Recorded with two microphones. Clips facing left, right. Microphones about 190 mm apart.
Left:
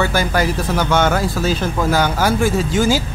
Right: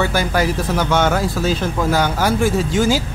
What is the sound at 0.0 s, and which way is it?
Speech, centre (ahead or behind).